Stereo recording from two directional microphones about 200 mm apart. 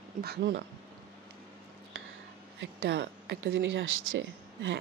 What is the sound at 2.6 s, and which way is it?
Speech, 55° right (ahead or behind).